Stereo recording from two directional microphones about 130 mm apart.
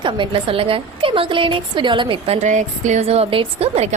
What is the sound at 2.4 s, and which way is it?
A woman's voice, 65° right (ahead or behind).